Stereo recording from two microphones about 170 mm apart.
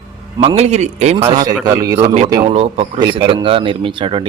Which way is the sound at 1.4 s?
25° right (ahead or behind).